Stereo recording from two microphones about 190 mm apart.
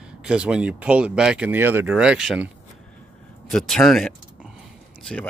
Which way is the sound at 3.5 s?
Centre (ahead or behind).